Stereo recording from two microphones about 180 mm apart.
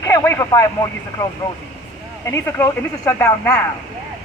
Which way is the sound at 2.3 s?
15° left (ahead or behind).